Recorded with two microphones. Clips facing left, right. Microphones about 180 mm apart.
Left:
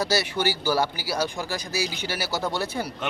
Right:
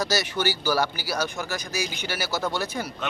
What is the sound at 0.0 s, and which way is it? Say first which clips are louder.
Speech: left 1 dB; 30° left (ahead or behind).